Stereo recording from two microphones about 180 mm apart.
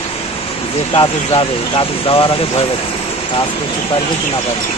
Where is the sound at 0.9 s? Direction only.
30° left (ahead or behind).